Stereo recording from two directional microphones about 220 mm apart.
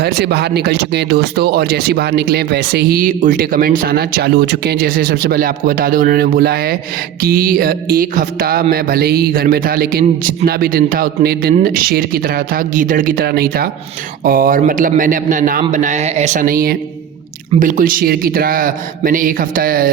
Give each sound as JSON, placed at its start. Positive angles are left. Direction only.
{"t": 0.0, "sound": "speech", "side_deg": -45}